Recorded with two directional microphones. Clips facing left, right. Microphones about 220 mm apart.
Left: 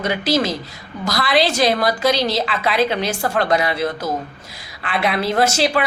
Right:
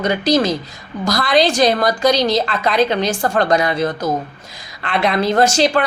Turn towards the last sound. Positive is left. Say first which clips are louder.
# right 3 dB
turn(degrees=5)  # may be behind; listen again after turning